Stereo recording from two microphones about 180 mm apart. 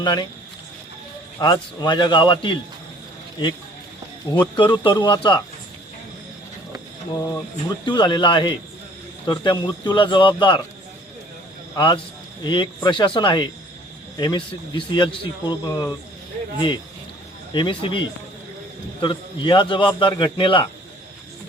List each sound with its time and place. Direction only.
0.0 s a man's voice: 25° left (ahead or behind)
1.4 s a man's voice: 20° left (ahead or behind)
4.4 s a man's voice: 25° left (ahead or behind)
7.9 s a man's voice: 25° left (ahead or behind)
11.7 s a man's voice: 25° left (ahead or behind)
19.0 s a man's voice: 25° left (ahead or behind)